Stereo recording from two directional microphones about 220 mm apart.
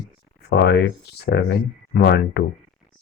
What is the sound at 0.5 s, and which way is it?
Speech, 50° left (ahead or behind).